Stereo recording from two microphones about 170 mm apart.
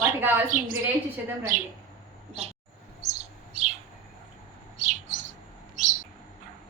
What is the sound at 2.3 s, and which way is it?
Speech, 35° right (ahead or behind).